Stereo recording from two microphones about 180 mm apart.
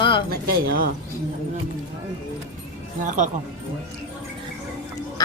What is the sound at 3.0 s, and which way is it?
Speech, 45° right (ahead or behind).